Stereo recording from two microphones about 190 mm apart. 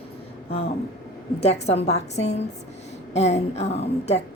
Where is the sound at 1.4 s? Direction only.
35° left (ahead or behind).